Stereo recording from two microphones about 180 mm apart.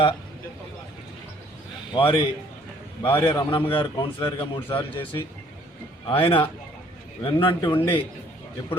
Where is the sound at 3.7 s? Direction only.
30° left (ahead or behind).